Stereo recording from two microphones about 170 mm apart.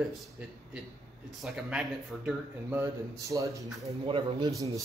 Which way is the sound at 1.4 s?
5° right (ahead or behind).